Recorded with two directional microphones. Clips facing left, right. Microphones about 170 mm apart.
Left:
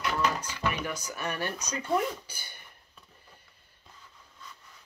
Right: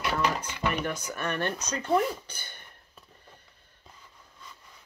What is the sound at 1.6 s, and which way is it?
Speech, 10° left (ahead or behind).